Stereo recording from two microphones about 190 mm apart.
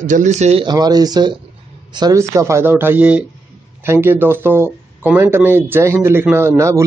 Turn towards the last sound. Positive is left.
turn(degrees=-15)  # may be behind; listen again after turning